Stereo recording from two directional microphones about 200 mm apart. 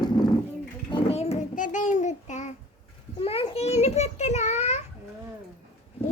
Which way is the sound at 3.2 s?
30° left (ahead or behind).